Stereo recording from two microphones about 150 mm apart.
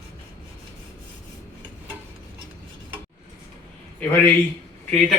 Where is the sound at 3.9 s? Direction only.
10° left (ahead or behind).